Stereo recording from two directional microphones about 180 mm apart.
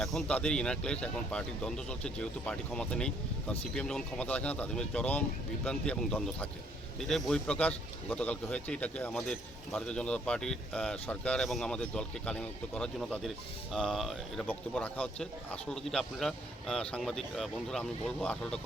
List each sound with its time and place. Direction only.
0.0 s a man's voice: centre (ahead or behind)